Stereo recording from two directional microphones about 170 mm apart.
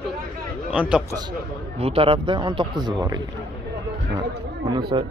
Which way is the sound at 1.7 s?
35° right (ahead or behind).